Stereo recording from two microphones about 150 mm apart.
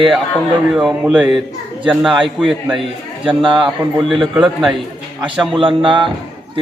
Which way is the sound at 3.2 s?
35° right (ahead or behind).